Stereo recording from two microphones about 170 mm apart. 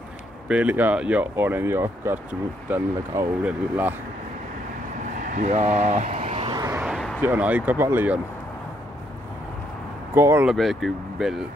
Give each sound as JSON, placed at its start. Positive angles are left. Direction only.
{"t": 0.5, "sound": "speech", "side_deg": -10}
{"t": 5.2, "sound": "vehicle", "side_deg": -45}
{"t": 6.8, "sound": "a sound", "side_deg": 0}
{"t": 7.2, "sound": "speech", "side_deg": -10}
{"t": 10.1, "sound": "speech", "side_deg": -15}
{"t": 10.5, "sound": "speech", "side_deg": 0}